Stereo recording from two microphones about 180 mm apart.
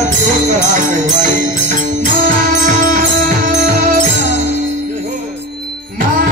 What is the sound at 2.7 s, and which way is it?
Music, 45° right (ahead or behind).